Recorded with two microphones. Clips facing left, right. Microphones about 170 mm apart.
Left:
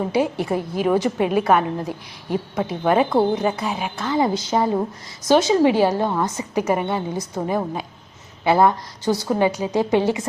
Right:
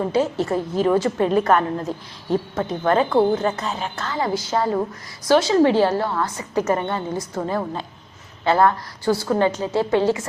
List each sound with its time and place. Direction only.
0.1 s a woman's voice: 15° left (ahead or behind)